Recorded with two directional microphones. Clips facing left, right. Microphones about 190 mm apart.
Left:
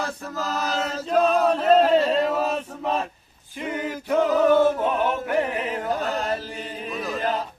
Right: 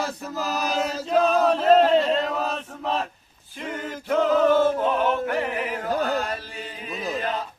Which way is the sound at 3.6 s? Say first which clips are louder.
Left 3 dB; 10° left (ahead or behind).